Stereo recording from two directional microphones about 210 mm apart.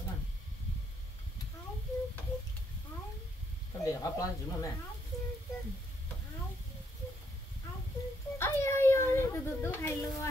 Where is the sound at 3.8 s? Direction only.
15° left (ahead or behind).